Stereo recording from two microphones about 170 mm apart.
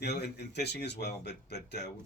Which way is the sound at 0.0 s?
75° left (ahead or behind).